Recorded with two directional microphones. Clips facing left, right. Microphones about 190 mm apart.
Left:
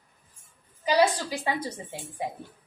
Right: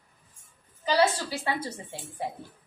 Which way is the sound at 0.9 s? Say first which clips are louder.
Left 1 dB; 15° left (ahead or behind).